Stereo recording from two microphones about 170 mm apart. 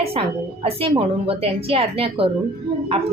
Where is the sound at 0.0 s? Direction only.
35° right (ahead or behind).